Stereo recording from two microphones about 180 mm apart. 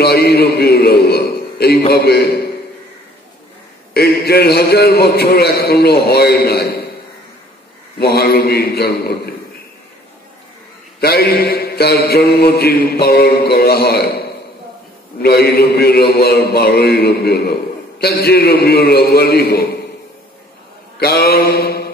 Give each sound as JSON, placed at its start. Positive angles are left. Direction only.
{"t": 0.0, "sound": "a sound", "side_deg": 60}
{"t": 1.9, "sound": "mantra", "side_deg": 60}
{"t": 3.9, "sound": "mantra", "side_deg": 60}
{"t": 8.0, "sound": "mantra", "side_deg": 60}
{"t": 11.0, "sound": "mantra", "side_deg": 60}
{"t": 15.2, "sound": "mantra", "side_deg": 60}
{"t": 21.0, "sound": "mantra", "side_deg": 60}